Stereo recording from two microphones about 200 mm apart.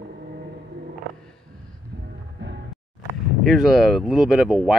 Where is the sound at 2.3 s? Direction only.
60° right (ahead or behind).